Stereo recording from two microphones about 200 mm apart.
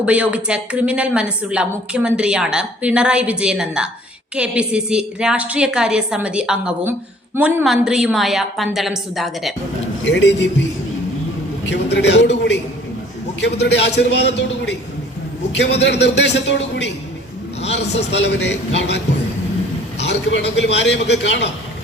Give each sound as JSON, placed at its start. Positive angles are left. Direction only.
{"t": 0.0, "sound": "a woman's voice", "side_deg": -5}
{"t": 10.0, "sound": "a man's voice", "side_deg": 60}
{"t": 13.6, "sound": "a man's voice", "side_deg": 60}
{"t": 18.2, "sound": "a man's voice", "side_deg": 60}